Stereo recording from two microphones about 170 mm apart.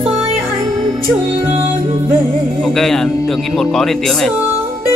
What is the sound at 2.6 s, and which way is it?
Speech, 5° left (ahead or behind).